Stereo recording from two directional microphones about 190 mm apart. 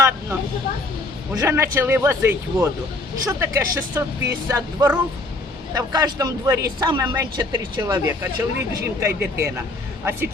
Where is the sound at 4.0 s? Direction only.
15° right (ahead or behind).